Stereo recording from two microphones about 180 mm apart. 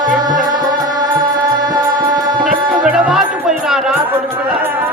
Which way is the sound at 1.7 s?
25° right (ahead or behind).